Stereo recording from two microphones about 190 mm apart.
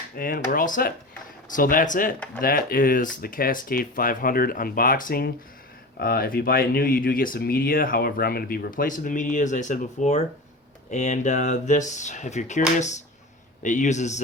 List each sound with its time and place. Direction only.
0.2 s speech: 50° left (ahead or behind)